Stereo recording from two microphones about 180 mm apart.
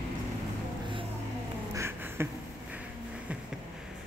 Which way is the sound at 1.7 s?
15° right (ahead or behind).